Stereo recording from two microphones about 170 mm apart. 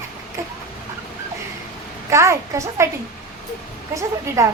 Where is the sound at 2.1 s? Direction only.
15° right (ahead or behind).